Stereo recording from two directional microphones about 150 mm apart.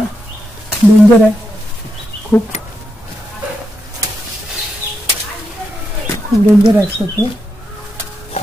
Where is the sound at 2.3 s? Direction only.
10° left (ahead or behind).